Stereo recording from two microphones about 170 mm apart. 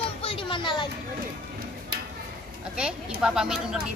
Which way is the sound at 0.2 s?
30° left (ahead or behind).